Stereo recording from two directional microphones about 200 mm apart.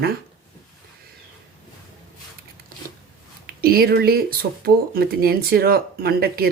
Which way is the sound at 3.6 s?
50° right (ahead or behind).